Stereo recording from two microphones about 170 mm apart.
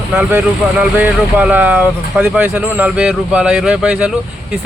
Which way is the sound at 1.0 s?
10° right (ahead or behind).